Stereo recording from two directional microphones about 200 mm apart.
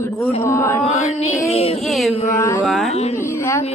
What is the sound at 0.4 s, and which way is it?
Speech, 15° left (ahead or behind).